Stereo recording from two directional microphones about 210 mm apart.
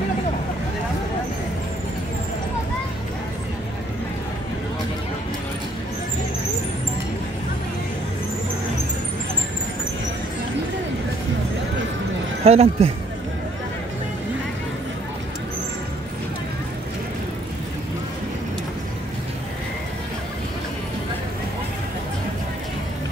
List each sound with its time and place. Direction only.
12.4 s speech: 30° right (ahead or behind)